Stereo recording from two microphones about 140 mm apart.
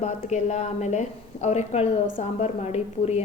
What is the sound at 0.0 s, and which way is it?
A woman's voice, 55° left (ahead or behind).